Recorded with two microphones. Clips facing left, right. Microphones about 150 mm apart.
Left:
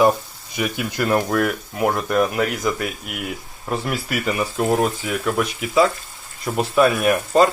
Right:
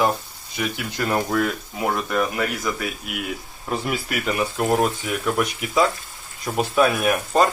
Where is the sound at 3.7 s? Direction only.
Centre (ahead or behind).